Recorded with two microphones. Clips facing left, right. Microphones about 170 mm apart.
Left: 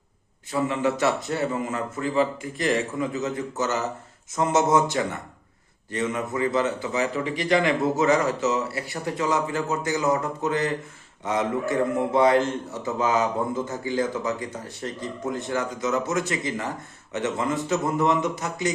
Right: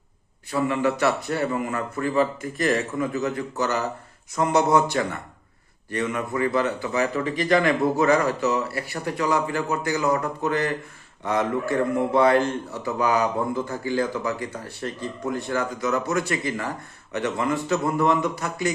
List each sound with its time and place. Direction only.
0.5 s a man's voice: 20° left (ahead or behind)